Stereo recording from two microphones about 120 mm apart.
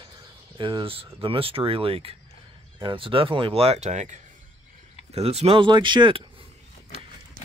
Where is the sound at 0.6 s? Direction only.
45° right (ahead or behind); by 4.2 s 80° right.